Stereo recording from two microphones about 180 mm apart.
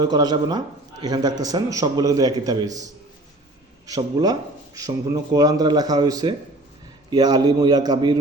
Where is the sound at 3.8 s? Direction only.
20° right (ahead or behind).